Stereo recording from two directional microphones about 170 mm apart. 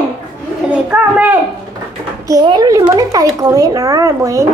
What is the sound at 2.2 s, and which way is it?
Speech, 25° right (ahead or behind).